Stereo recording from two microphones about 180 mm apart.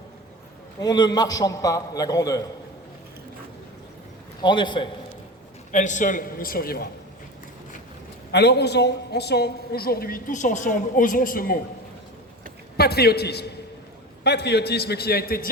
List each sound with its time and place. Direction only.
0.8 s a man's voice: 20° left (ahead or behind)
4.4 s a man's voice: 25° left (ahead or behind)
5.7 s a man's voice: 45° left (ahead or behind)
8.3 s a woman's voice: 65° left (ahead or behind); by 11.5 s 50° left (ahead or behind)
12.7 s a man's voice: 60° left (ahead or behind)